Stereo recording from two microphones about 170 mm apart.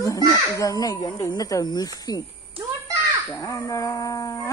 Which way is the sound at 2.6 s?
30° right (ahead or behind).